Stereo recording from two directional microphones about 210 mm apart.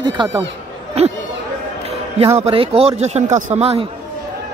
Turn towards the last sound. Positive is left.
turn(degrees=-30)  # may be behind; listen again after turning